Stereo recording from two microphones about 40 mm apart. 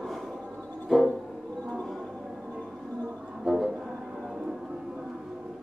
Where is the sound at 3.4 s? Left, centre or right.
Centre.